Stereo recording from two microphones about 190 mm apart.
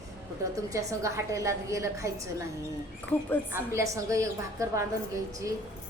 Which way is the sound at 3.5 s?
15° right (ahead or behind).